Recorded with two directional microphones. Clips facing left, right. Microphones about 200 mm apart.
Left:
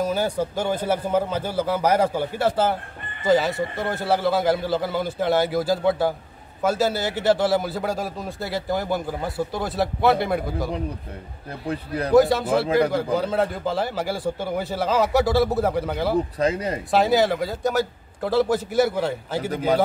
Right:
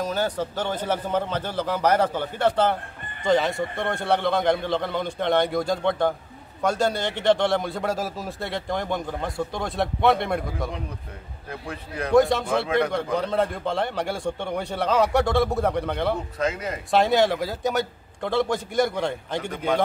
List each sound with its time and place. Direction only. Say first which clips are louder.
0.0 s a man's voice: left 3 dB; 10° left (ahead or behind)
11.6 s a man's voice: left 6 dB; 30° left (ahead or behind)
12.1 s a man's voice: left 2 dB; centre (ahead or behind)
16.3 s a man's voice: left 4 dB; 35° left (ahead or behind)
16.9 s a man's voice: even; centre (ahead or behind)
19.5 s a man's voice: left 4 dB; 40° left (ahead or behind)